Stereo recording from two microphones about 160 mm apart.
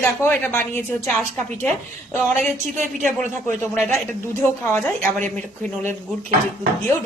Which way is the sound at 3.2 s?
10° left (ahead or behind).